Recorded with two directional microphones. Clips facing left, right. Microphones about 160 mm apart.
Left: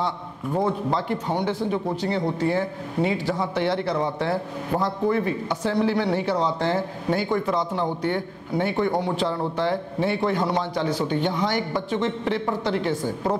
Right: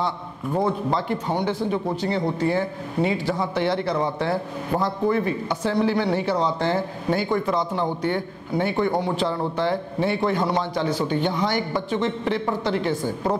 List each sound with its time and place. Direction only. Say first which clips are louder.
0.6 s a man's voice: right 1 dB; 25° right (ahead or behind)
1.4 s a man's voice: right 1 dB; 10° right (ahead or behind)